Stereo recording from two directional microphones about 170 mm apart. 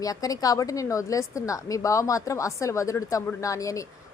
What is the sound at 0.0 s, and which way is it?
A woman's voice, 20° left (ahead or behind).